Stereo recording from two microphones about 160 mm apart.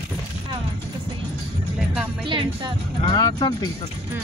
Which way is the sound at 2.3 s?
30° right (ahead or behind).